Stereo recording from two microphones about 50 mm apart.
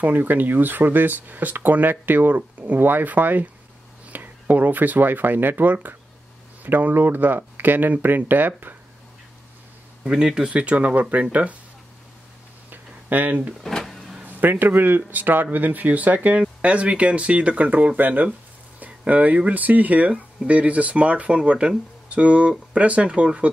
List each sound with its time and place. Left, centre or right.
0.0 s speech: right
10.0 s speech: centre
10.5 s speech: right
12.6 s a sound: right
13.6 s power windows: centre
14.2 s speech: right